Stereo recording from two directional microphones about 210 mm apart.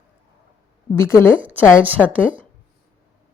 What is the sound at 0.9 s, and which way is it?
Speech, 10° left (ahead or behind).